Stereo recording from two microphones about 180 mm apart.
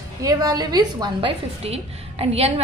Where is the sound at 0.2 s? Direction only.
20° right (ahead or behind).